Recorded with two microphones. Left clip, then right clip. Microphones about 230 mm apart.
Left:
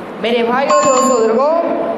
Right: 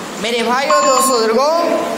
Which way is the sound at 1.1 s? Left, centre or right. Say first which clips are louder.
Left 1 dB; right.